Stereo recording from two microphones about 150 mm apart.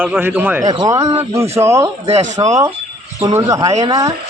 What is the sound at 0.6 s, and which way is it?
Speech, 25° right (ahead or behind).